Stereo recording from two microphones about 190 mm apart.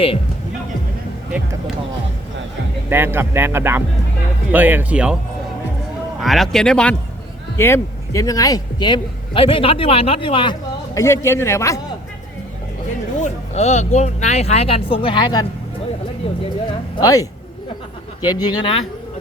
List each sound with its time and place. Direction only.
2.9 s speech: 10° right (ahead or behind)
6.1 s a man's voice: centre (ahead or behind)
13.2 s speech: 35° left (ahead or behind)
16.6 s a man's voice: 20° left (ahead or behind)